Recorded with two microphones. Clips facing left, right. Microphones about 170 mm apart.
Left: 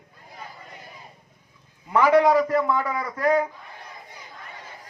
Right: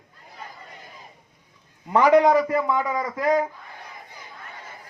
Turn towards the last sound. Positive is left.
turn(degrees=-15)  # may be behind; listen again after turning